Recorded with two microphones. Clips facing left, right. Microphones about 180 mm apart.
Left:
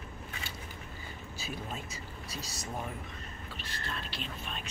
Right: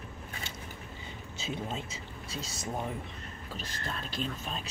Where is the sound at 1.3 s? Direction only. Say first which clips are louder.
Right 4 dB; 25° right (ahead or behind).